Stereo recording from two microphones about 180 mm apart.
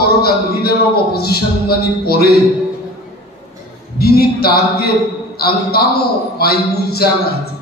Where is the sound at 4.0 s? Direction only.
60° left (ahead or behind).